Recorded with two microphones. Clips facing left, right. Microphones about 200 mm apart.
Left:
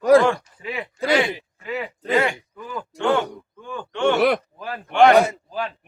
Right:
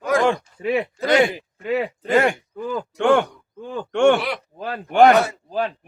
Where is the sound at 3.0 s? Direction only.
55° right (ahead or behind).